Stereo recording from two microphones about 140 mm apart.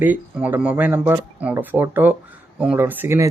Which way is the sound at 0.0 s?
10° right (ahead or behind).